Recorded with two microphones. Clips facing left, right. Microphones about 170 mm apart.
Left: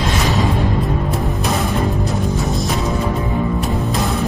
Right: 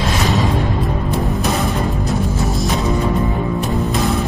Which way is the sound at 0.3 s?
Centre (ahead or behind).